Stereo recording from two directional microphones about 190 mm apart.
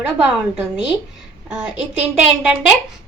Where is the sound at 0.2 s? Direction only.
5° right (ahead or behind).